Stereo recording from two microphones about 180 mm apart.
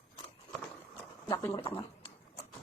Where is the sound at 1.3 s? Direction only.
15° left (ahead or behind).